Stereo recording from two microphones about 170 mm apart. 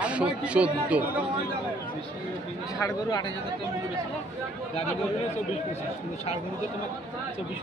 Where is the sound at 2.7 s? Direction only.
20° left (ahead or behind).